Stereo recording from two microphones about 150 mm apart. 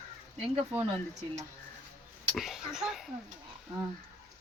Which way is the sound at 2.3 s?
Centre (ahead or behind).